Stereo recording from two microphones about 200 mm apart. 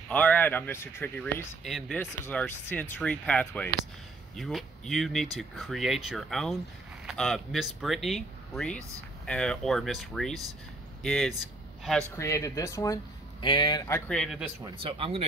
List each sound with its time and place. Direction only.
0.1 s speech: 5° left (ahead or behind)
2.2 s speech: 10° left (ahead or behind)
12.2 s speech: 15° left (ahead or behind)
14.6 s speech: 25° right (ahead or behind)